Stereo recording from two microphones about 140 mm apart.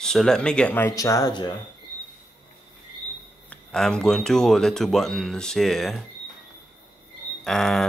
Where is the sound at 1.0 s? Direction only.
25° left (ahead or behind).